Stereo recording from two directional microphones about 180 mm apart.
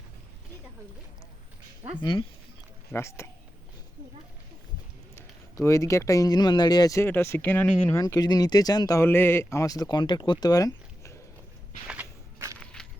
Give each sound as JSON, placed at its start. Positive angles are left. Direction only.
{"t": 2.0, "sound": "speech", "side_deg": 25}
{"t": 2.9, "sound": "speech", "side_deg": 15}
{"t": 5.1, "sound": "speech", "side_deg": 15}
{"t": 11.9, "sound": "walk", "side_deg": -15}
{"t": 12.5, "sound": "walk", "side_deg": 5}